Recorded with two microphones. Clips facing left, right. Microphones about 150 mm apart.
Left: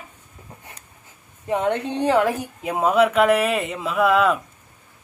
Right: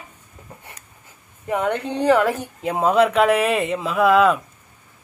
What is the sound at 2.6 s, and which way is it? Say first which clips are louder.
Speech: right 1 dB; 5° left (ahead or behind).